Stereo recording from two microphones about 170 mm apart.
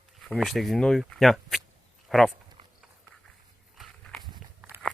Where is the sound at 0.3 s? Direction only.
Centre (ahead or behind).